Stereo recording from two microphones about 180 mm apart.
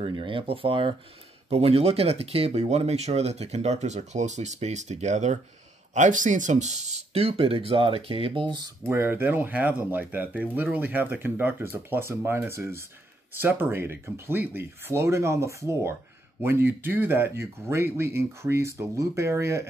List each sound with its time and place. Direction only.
0.0 s speech: 30° right (ahead or behind)
8.8 s speech: 10° right (ahead or behind)